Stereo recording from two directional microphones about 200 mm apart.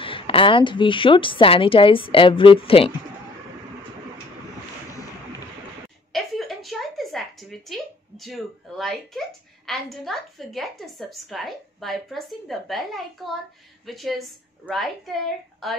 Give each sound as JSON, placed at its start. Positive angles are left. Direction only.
{"t": 0.0, "sound": "a woman's voice", "side_deg": 25}
{"t": 6.1, "sound": "a sound", "side_deg": 0}
{"t": 9.7, "sound": "a woman's voice", "side_deg": 0}